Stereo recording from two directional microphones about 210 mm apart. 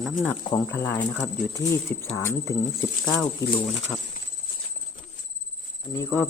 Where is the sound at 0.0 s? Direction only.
5° left (ahead or behind).